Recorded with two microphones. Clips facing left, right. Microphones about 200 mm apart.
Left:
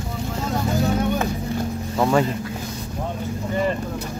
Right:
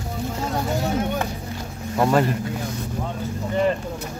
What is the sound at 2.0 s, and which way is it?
Speech, centre (ahead or behind).